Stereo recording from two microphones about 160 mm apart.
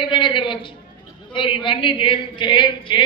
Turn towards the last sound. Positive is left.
turn(degrees=30)  # may be behind; listen again after turning